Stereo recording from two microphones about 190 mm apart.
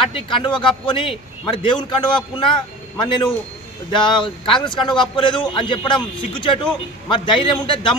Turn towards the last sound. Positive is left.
turn(degrees=25)  # may be behind; listen again after turning